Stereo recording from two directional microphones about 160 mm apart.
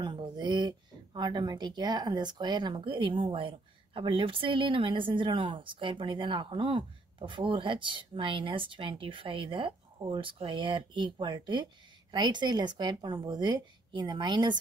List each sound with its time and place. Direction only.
0.0 s speech: 30° right (ahead or behind)